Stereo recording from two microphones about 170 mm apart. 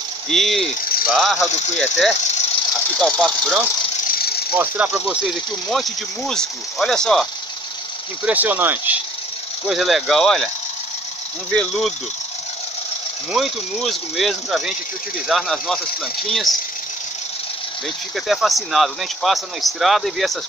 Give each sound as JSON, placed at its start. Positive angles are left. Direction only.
{"t": 0.3, "sound": "speech", "side_deg": 0}
{"t": 4.1, "sound": "rattle", "side_deg": 65}
{"t": 4.6, "sound": "speech", "side_deg": -10}
{"t": 8.3, "sound": "speech", "side_deg": -10}
{"t": 11.5, "sound": "speech", "side_deg": 0}
{"t": 13.3, "sound": "speech", "side_deg": 0}
{"t": 18.1, "sound": "speech", "side_deg": 0}